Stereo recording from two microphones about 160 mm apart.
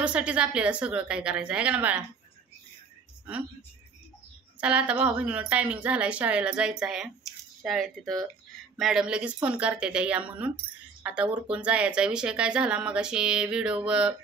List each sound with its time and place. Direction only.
0.0 s a woman's voice: 5° right (ahead or behind)
4.6 s a woman's voice: 10° right (ahead or behind)